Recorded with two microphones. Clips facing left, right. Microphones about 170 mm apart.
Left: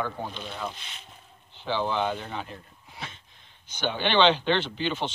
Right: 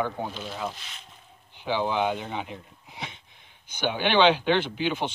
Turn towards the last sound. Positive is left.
turn(degrees=-10)  # may be behind; listen again after turning